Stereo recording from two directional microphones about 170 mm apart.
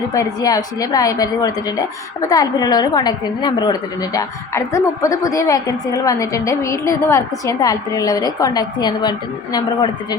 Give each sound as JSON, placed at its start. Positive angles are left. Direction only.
{"t": 0.1, "sound": "a woman's voice", "side_deg": 20}